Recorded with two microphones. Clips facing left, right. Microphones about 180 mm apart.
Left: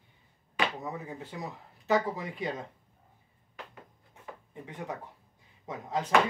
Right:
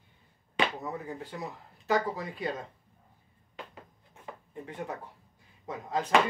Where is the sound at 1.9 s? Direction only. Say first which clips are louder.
Left 1 dB; 20° left (ahead or behind).